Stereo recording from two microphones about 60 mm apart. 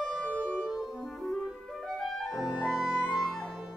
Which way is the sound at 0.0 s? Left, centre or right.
Left.